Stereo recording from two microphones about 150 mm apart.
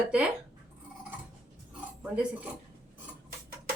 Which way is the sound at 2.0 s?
5° right (ahead or behind).